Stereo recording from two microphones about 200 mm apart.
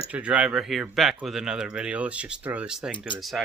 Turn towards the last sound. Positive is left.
turn(degrees=0)  # may be behind; listen again after turning